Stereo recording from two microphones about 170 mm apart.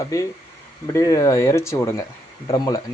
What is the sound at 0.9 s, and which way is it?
Speech, 20° left (ahead or behind).